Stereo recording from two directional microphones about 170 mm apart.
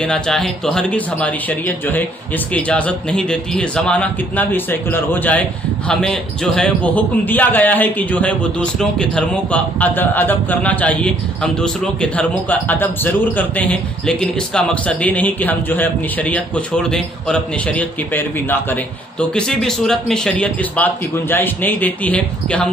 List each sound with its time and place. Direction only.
0.0 s a man's voice: 5° left (ahead or behind)